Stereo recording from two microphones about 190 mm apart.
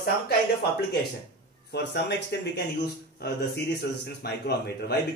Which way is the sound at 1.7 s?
65° left (ahead or behind).